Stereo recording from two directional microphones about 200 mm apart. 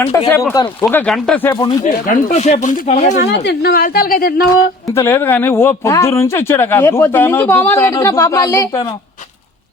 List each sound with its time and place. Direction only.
0.3 s speech: 15° left (ahead or behind)
1.8 s speech: 35° left (ahead or behind)
3.2 s speech: 55° left (ahead or behind)
4.9 s speech: 10° left (ahead or behind)